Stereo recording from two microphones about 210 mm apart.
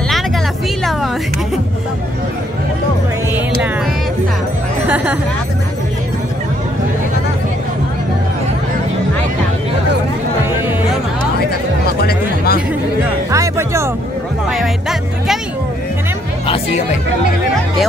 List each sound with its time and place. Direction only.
4.8 s speech: 10° right (ahead or behind)
12.0 s music: 50° left (ahead or behind)
13.3 s music: 15° right (ahead or behind)
14.5 s music: centre (ahead or behind)